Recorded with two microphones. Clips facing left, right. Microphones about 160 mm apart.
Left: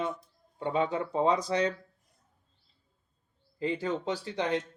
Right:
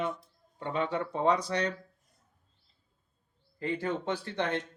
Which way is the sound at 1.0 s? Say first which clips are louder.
Right 2 dB; 25° left (ahead or behind).